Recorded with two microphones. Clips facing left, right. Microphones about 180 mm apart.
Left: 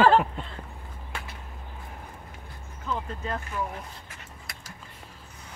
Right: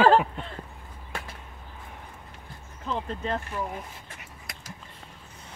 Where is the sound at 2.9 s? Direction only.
30° right (ahead or behind).